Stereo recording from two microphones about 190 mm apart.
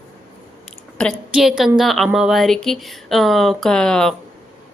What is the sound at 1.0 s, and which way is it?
A woman's voice, centre (ahead or behind).